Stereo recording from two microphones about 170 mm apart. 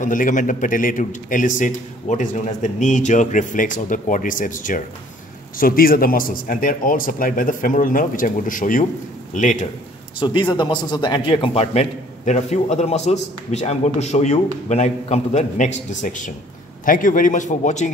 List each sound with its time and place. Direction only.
0.0 s a man's voice: 50° left (ahead or behind)
10.1 s a man's voice: 30° left (ahead or behind); by 17.8 s 45° left (ahead or behind)